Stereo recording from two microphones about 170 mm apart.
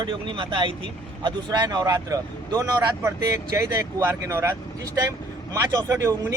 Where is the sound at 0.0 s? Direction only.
30° right (ahead or behind).